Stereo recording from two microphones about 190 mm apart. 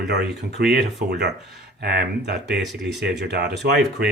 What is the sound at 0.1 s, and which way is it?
Speech, 60° right (ahead or behind).